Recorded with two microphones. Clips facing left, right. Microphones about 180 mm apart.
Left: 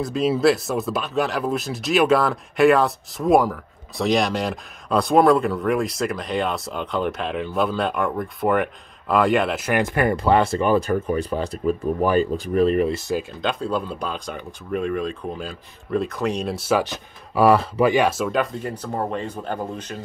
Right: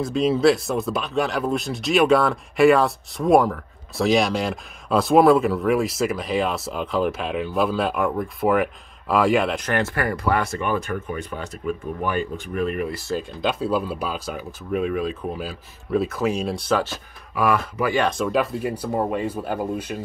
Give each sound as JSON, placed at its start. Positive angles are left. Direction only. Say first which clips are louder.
{"t": 0.0, "sound": "speech", "louder": "right 1 dB", "side_deg": 0}
{"t": 13.4, "sound": "speech", "louder": "right 1 dB", "side_deg": -5}
{"t": 17.3, "sound": "speech", "louder": "left 5 dB", "side_deg": 30}
{"t": 17.9, "sound": "speech", "louder": "left 1 dB", "side_deg": 5}